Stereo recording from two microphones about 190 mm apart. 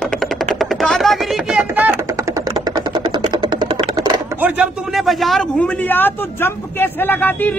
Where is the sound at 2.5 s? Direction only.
25° right (ahead or behind).